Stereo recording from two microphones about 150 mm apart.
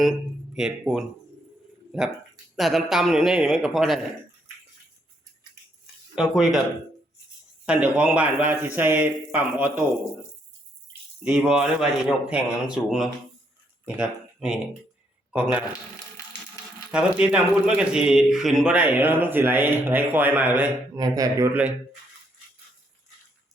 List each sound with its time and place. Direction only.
0.5 s speech: 5° right (ahead or behind)
6.1 s speech: centre (ahead or behind)
7.6 s speech: 5° right (ahead or behind)
11.2 s a man's voice: 5° right (ahead or behind)
16.9 s speech: 5° right (ahead or behind)
20.9 s a man's voice: 25° right (ahead or behind)